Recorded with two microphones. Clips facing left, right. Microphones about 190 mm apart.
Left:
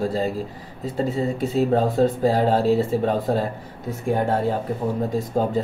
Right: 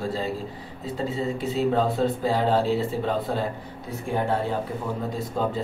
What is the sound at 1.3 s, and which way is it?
Speech, 45° left (ahead or behind).